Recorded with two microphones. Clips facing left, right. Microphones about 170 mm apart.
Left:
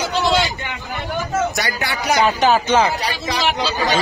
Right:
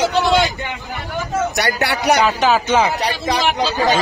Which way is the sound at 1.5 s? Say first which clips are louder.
Right 4 dB; 70° right (ahead or behind).